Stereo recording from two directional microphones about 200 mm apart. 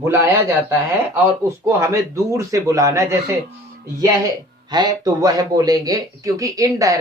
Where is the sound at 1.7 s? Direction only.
15° right (ahead or behind).